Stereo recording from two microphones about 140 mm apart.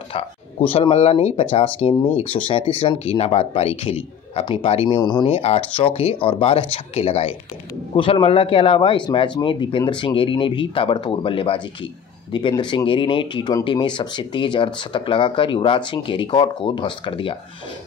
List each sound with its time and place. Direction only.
0.7 s speech: 45° left (ahead or behind)